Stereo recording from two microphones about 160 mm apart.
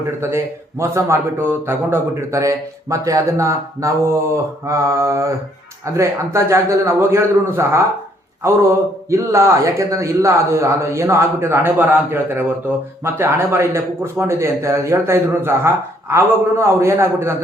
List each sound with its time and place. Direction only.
0.2 s a man's voice: 15° right (ahead or behind)
4.6 s mantra: 20° right (ahead or behind)
5.8 s a man's voice: 20° right (ahead or behind)
9.0 s a man's voice: 15° right (ahead or behind)